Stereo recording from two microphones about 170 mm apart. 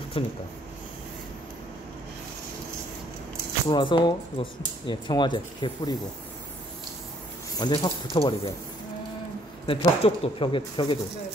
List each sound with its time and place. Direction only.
0.2 s speech: 35° left (ahead or behind)
3.6 s speech: 30° left (ahead or behind)
7.5 s speech: 25° left (ahead or behind)
9.7 s speech: 30° left (ahead or behind)